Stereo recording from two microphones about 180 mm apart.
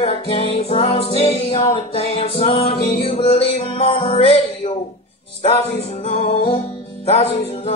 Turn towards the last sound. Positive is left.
turn(degrees=35)  # may be behind; listen again after turning